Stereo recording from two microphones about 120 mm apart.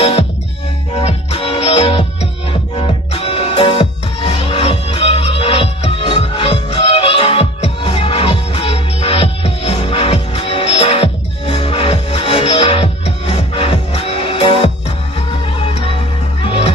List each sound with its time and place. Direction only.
0.9 s music: 60° left (ahead or behind)